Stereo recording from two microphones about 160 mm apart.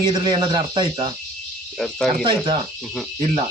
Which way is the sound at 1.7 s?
Centre (ahead or behind).